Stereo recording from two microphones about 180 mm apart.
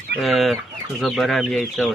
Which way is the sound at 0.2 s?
Centre (ahead or behind).